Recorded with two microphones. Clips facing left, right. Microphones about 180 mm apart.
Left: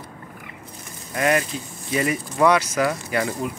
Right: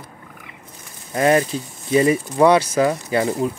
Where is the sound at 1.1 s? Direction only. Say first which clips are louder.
Right 5 dB; 30° right (ahead or behind).